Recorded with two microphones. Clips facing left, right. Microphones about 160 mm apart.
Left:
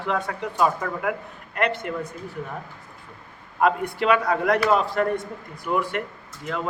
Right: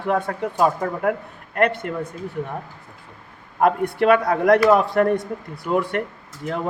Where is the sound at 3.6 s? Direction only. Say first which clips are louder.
Right 4 dB; 55° right (ahead or behind).